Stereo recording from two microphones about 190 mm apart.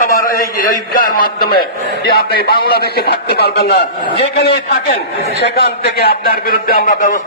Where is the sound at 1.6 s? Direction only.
55° left (ahead or behind).